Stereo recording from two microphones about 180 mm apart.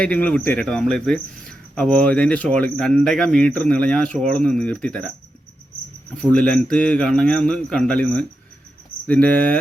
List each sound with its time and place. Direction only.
0.0 s speech: 5° left (ahead or behind)
6.3 s speech: 5° left (ahead or behind)